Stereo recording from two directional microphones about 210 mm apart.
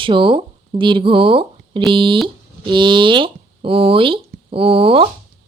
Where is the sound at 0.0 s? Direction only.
25° right (ahead or behind).